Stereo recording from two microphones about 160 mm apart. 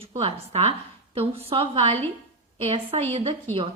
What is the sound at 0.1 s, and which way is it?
A woman's voice, 40° right (ahead or behind).